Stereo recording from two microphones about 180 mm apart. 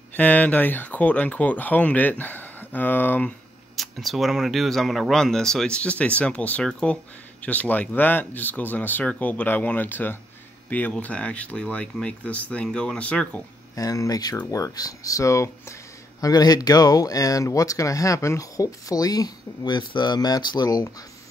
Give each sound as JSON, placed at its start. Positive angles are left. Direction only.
{"t": 0.1, "sound": "speech", "side_deg": 10}
{"t": 13.7, "sound": "speech", "side_deg": 20}